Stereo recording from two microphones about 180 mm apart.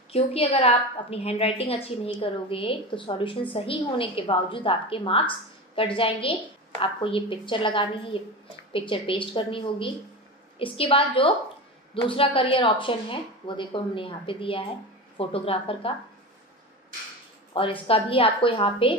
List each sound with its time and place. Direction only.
0.1 s a woman's voice: 35° left (ahead or behind)
17.6 s speech: 30° left (ahead or behind)